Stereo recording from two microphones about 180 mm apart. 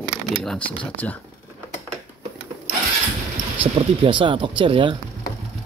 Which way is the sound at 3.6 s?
30° right (ahead or behind).